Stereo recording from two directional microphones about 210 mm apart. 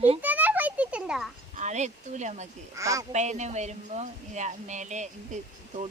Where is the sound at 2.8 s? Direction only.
15° right (ahead or behind).